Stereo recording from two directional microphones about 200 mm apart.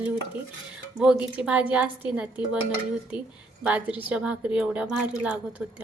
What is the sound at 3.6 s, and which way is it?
Speech, 5° right (ahead or behind).